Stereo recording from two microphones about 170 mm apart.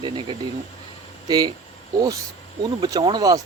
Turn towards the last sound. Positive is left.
turn(degrees=-20)  # may be behind; listen again after turning